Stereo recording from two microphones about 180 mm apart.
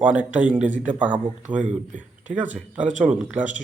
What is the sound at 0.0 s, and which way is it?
Speech, 10° right (ahead or behind).